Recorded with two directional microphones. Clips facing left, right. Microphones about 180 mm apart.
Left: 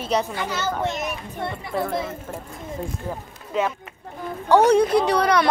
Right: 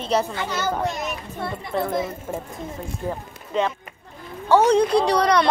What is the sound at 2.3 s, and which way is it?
Speech, 15° right (ahead or behind).